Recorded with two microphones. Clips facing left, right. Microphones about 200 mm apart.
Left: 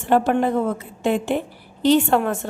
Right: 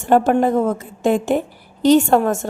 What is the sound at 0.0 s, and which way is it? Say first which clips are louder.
A woman's voice: right 3 dB; 45° right (ahead or behind).